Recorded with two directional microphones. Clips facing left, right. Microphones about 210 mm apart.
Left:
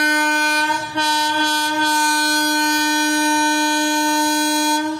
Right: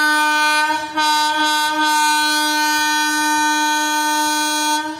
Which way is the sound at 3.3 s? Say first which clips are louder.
Left 3 dB; 20° left (ahead or behind).